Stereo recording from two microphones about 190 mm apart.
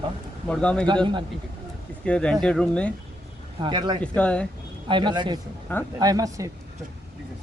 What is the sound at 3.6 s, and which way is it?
Speech, 25° right (ahead or behind).